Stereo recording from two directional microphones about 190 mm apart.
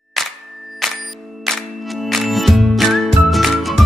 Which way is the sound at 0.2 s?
Centre (ahead or behind).